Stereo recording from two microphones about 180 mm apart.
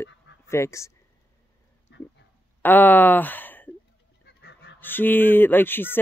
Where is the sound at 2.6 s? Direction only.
10° left (ahead or behind).